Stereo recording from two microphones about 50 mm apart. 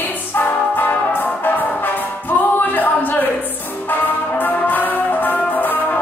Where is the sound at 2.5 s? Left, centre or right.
Left.